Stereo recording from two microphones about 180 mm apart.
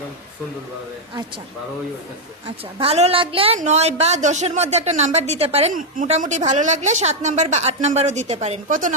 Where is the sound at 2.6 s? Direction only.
30° right (ahead or behind).